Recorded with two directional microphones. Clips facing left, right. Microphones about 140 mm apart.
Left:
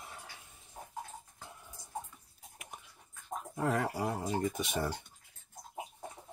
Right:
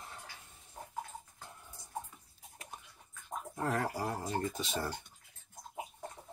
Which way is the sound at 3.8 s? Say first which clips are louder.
Left 2 dB; centre (ahead or behind).